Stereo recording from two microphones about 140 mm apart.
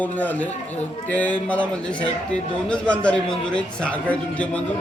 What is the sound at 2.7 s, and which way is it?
A man's voice, 5° left (ahead or behind).